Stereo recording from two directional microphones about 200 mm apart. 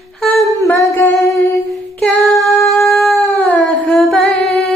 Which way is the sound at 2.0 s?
Centre (ahead or behind).